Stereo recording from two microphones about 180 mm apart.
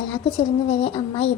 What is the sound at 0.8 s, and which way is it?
Speech, 25° left (ahead or behind).